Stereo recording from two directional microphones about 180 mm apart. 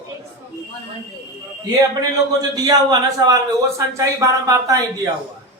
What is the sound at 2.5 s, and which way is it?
A man's voice, 20° right (ahead or behind).